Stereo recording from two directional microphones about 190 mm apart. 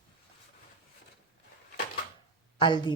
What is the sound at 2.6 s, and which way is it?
Speech, 25° left (ahead or behind).